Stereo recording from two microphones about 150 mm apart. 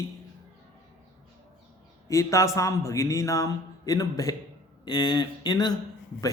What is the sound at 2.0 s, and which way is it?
A man's voice, 20° left (ahead or behind).